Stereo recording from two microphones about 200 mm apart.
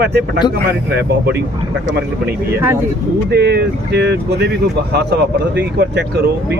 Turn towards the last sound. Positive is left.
turn(degrees=-55)  # may be behind; listen again after turning